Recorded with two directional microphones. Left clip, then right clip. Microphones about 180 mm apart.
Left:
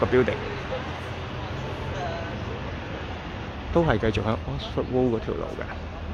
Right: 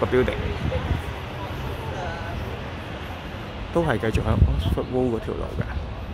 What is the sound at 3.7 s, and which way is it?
Speech, 10° left (ahead or behind).